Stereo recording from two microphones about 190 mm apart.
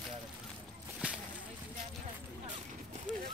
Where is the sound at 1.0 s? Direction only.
5° right (ahead or behind).